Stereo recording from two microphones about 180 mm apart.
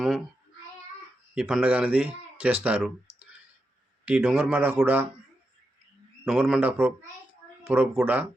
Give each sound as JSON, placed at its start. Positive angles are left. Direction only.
{"t": 1.4, "sound": "speech", "side_deg": -5}
{"t": 6.2, "sound": "speech", "side_deg": -5}